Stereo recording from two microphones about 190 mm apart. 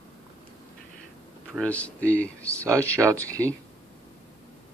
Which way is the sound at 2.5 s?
15° right (ahead or behind).